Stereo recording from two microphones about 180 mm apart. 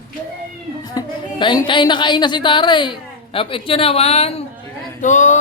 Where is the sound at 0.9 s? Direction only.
25° left (ahead or behind).